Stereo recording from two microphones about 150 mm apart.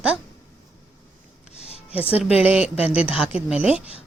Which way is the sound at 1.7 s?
40° left (ahead or behind).